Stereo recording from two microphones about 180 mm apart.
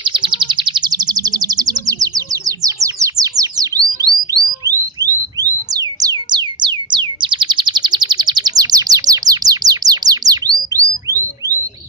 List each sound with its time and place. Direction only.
0.0 s bird: 25° right (ahead or behind)
5.4 s music: 20° right (ahead or behind)
10.7 s bird: 15° right (ahead or behind)